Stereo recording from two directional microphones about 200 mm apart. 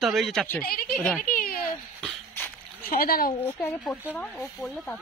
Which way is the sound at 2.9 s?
45° left (ahead or behind).